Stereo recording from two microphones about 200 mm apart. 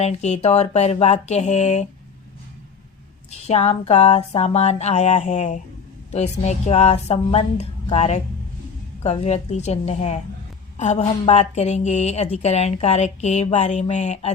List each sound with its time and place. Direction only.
0.0 s a woman's voice: 35° left (ahead or behind)
3.3 s a woman's voice: 30° left (ahead or behind)